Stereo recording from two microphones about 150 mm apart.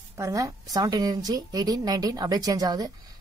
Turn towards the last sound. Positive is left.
turn(degrees=-25)  # may be behind; listen again after turning